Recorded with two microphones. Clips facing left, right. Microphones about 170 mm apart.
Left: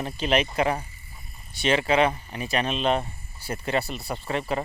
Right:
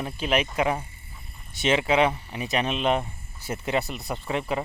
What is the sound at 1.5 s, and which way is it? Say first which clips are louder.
Speech: even; 20° right (ahead or behind).